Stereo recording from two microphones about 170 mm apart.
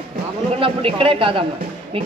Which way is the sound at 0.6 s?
30° right (ahead or behind).